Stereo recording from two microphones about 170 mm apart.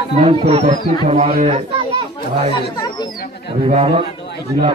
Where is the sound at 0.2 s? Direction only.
30° right (ahead or behind).